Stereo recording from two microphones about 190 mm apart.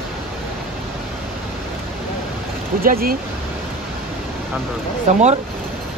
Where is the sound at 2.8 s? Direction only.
50° right (ahead or behind).